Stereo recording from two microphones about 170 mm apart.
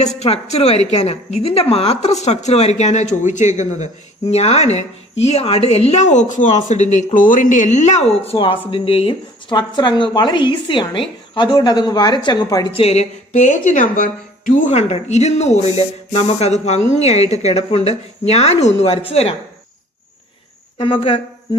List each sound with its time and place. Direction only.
0.0 s a woman's voice: 40° left (ahead or behind); by 12.6 s 20° left (ahead or behind)
12.7 s a woman's voice: 40° left (ahead or behind)
20.7 s cricket: 30° left (ahead or behind)